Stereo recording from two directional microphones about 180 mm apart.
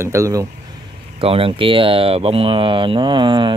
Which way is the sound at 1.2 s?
30° right (ahead or behind).